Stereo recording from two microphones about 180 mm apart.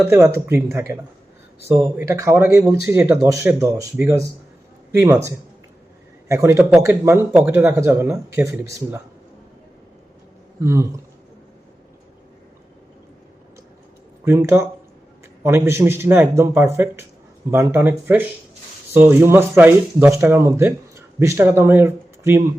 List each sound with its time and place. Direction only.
0.1 s speech: 15° right (ahead or behind)
10.6 s speech: 15° right (ahead or behind)
14.3 s speech: 15° right (ahead or behind)